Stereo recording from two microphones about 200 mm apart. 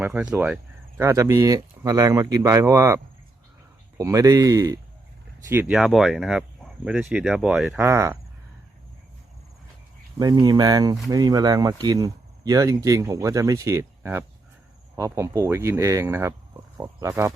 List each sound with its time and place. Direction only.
0.0 s speech: 5° right (ahead or behind)
5.7 s speech: centre (ahead or behind)
7.8 s speech: 10° right (ahead or behind)
10.2 s speech: 20° right (ahead or behind)